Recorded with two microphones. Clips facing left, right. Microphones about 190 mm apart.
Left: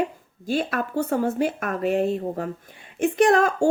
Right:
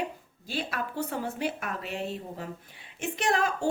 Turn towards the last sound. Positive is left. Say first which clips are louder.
# left 10 dB
turn(degrees=50)  # may be behind; listen again after turning